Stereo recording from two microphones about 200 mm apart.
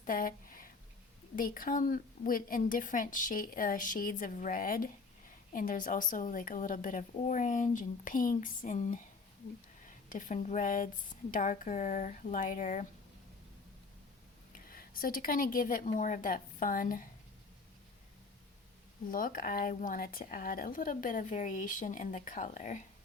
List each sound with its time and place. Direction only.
0.0 s a sound: 45° left (ahead or behind)
1.4 s a woman's voice: 45° left (ahead or behind)
14.5 s a woman's voice: 45° left (ahead or behind)
19.1 s speech: 45° left (ahead or behind)